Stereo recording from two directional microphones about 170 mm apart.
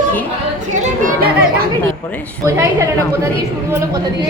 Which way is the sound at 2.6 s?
15° right (ahead or behind).